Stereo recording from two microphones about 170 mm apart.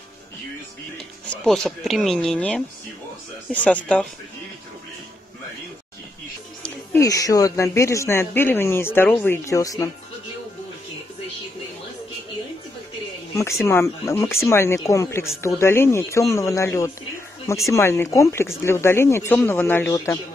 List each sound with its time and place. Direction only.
1.3 s speech: 5° left (ahead or behind)
7.0 s speech: 20° left (ahead or behind)
13.4 s speech: 15° left (ahead or behind)